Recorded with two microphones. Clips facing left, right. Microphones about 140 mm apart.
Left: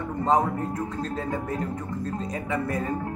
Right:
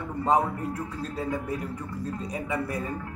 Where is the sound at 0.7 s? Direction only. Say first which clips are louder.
Left 3 dB; 10° right (ahead or behind).